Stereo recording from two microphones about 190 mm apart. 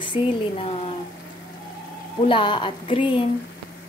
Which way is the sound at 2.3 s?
25° left (ahead or behind).